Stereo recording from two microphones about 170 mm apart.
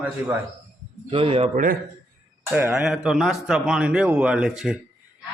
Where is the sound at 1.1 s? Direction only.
30° right (ahead or behind).